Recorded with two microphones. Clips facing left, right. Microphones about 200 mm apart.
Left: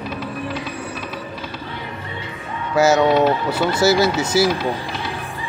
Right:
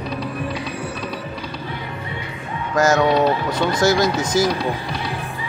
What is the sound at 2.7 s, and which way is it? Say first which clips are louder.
Speech: left 2 dB; 10° left (ahead or behind).